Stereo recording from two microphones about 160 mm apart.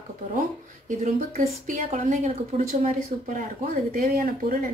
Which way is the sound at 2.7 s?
55° right (ahead or behind).